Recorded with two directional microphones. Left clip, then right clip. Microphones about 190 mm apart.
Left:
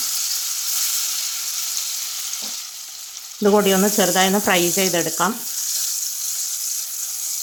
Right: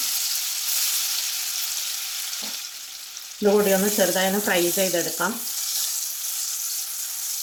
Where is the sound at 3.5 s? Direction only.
55° left (ahead or behind).